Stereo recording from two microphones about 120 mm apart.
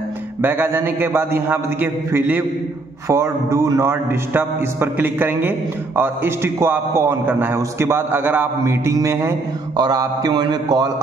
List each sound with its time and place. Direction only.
0.4 s a man's voice: 15° right (ahead or behind)
9.8 s mantra: 35° right (ahead or behind)